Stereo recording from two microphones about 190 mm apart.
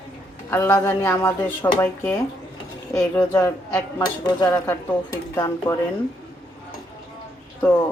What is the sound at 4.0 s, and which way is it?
Speech, 20° left (ahead or behind).